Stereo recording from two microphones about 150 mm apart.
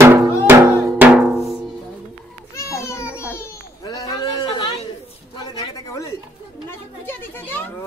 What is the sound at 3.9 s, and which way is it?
Sheep, 25° left (ahead or behind).